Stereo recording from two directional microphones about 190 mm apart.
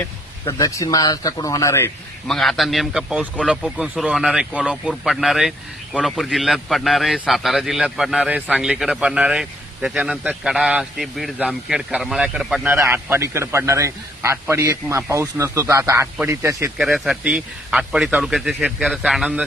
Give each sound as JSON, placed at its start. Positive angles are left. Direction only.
{"t": 0.4, "sound": "speech", "side_deg": 15}
{"t": 2.2, "sound": "speech", "side_deg": 0}
{"t": 16.8, "sound": "speech", "side_deg": 0}